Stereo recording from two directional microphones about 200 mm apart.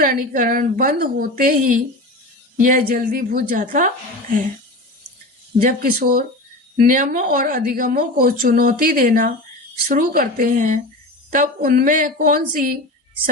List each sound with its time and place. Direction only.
0.0 s a woman's voice: 45° right (ahead or behind)
5.6 s a woman's voice: 45° right (ahead or behind)